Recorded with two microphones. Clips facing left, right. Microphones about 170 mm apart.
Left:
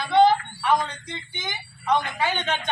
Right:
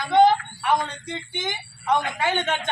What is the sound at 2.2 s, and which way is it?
Speech, 50° right (ahead or behind).